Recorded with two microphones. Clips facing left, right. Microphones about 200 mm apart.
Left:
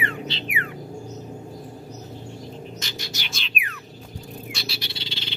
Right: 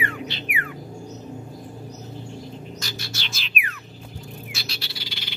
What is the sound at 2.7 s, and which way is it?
Bird, 20° left (ahead or behind).